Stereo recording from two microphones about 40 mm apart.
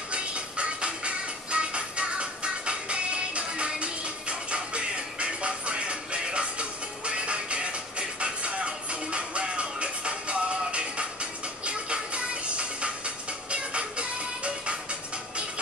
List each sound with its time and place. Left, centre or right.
0.1 s music: right